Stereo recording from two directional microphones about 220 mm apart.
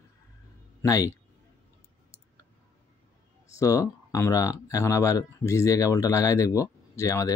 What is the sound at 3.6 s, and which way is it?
Speech, 15° left (ahead or behind).